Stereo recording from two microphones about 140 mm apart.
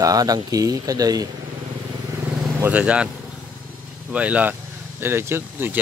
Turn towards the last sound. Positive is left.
turn(degrees=-15)  # may be behind; listen again after turning